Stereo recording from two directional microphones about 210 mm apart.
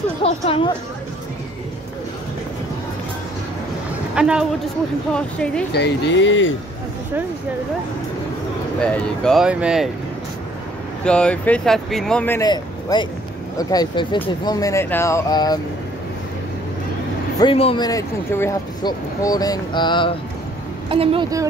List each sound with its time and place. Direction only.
0.2 s speech: 25° left (ahead or behind)
4.1 s a man's voice: 5° right (ahead or behind)
5.7 s speech: 55° left (ahead or behind)
8.8 s speech: 5° left (ahead or behind)
11.1 s speech: 5° left (ahead or behind)
12.9 s speech: 20° left (ahead or behind)
17.4 s speech: 25° left (ahead or behind)
20.9 s a woman's voice: 25° right (ahead or behind)